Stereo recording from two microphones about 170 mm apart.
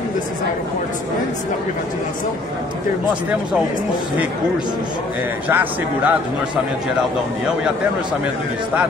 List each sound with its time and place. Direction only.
5.5 s speech: 10° right (ahead or behind)